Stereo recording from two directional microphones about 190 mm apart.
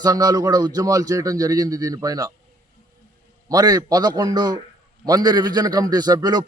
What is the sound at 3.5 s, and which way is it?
Speech, 20° right (ahead or behind).